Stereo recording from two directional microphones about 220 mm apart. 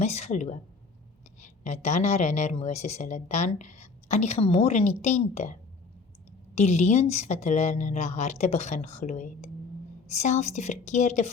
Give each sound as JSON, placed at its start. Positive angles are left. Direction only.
{"t": 0.0, "sound": "speech", "side_deg": 30}